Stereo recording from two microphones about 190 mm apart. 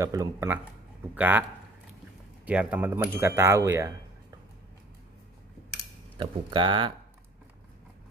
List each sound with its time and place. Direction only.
0.0 s speech: 15° right (ahead or behind)
2.4 s speech: 5° right (ahead or behind)
6.1 s speech: 25° right (ahead or behind)